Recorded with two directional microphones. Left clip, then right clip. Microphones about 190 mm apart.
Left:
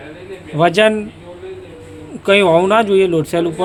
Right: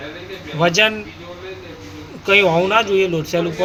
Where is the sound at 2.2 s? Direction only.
55° left (ahead or behind).